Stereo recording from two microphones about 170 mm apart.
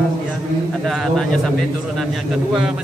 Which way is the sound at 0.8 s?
Centre (ahead or behind).